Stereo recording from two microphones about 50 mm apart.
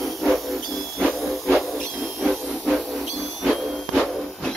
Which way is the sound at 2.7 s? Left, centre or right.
Centre.